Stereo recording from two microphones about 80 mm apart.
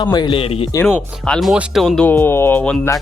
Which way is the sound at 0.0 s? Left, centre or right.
Left.